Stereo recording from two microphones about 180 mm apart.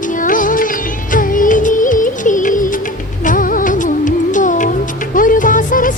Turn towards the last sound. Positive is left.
turn(degrees=45)  # may be behind; listen again after turning